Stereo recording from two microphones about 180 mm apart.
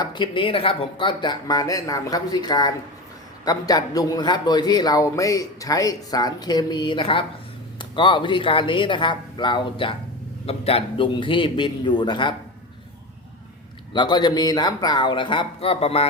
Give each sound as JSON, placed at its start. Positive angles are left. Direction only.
{"t": 0.0, "sound": "a man's voice", "side_deg": 25}
{"t": 13.9, "sound": "a man's voice", "side_deg": 25}